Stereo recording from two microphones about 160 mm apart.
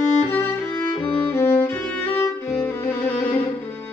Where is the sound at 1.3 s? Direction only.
15° left (ahead or behind).